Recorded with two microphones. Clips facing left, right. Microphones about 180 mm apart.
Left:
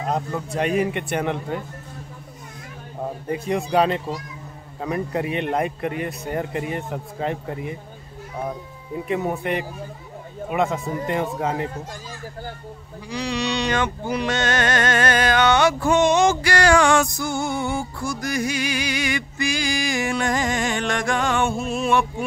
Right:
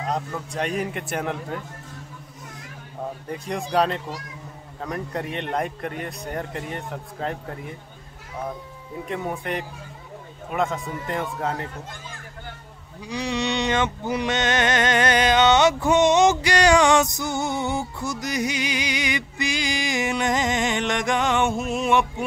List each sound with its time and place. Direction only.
0.0 s a man's voice: 5° left (ahead or behind)
3.3 s a man's voice: 5° left (ahead or behind)
9.0 s a man's voice: 5° left (ahead or behind)
13.1 s a sound: 20° right (ahead or behind)